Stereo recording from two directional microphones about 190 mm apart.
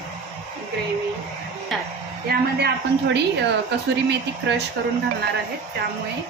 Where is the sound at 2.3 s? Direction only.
60° right (ahead or behind).